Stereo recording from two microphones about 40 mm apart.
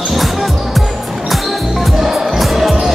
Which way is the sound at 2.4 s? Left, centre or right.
Centre.